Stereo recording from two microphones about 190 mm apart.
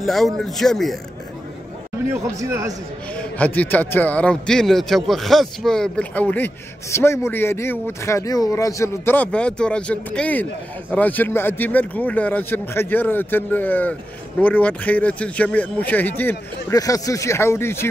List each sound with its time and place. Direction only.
0.0 s a man's voice: centre (ahead or behind)
2.3 s speech: 15° right (ahead or behind)
3.2 s a man's voice: 5° left (ahead or behind)